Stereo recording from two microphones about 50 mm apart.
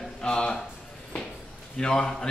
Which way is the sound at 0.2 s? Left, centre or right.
Centre.